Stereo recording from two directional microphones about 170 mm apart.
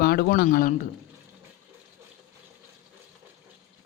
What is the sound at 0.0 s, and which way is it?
Speech, 65° left (ahead or behind).